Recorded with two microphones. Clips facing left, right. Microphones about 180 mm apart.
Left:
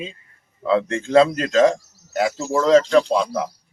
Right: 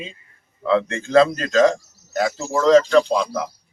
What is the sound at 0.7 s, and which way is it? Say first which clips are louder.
Speech: even; 25° left (ahead or behind).